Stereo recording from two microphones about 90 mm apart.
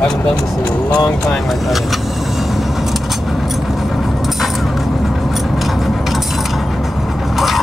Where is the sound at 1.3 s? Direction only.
Centre (ahead or behind).